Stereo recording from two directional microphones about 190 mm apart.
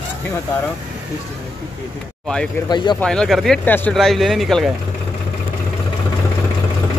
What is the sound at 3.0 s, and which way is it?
Speech, 5° left (ahead or behind).